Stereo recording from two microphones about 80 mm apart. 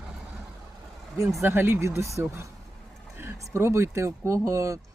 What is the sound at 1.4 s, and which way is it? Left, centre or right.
Speech, right.